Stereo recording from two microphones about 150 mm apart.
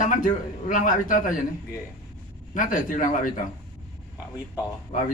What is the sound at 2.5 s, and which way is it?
Speech, 60° left (ahead or behind).